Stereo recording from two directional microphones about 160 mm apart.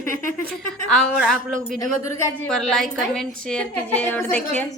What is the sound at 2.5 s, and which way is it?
A woman's voice, centre (ahead or behind).